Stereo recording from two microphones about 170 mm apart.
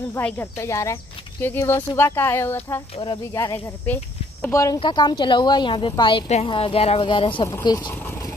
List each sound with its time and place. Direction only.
0.1 s a woman's voice: 15° left (ahead or behind); by 7.4 s 30° left (ahead or behind)
7.4 s a woman's voice: 20° left (ahead or behind)
7.9 s sewing machine: 15° left (ahead or behind)